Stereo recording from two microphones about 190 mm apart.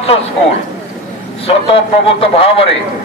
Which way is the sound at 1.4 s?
30° left (ahead or behind).